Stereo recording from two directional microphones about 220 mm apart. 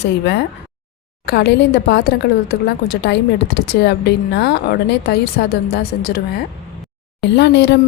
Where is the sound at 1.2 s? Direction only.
50° left (ahead or behind).